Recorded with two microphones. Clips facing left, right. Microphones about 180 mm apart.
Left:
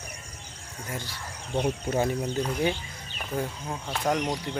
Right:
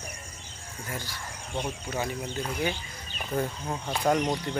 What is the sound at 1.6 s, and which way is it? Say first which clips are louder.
Speech: left 8 dB; 50° left (ahead or behind).